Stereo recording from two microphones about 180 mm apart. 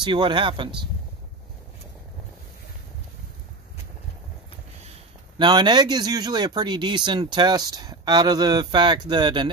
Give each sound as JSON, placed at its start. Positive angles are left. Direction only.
{"t": 0.0, "sound": "speech", "side_deg": -25}
{"t": 5.4, "sound": "speech", "side_deg": -25}